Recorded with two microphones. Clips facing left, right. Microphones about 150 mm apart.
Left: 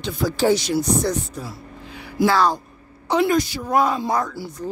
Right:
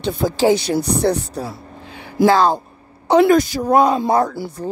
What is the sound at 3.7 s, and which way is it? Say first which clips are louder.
Speech: right 5 dB; 25° right (ahead or behind).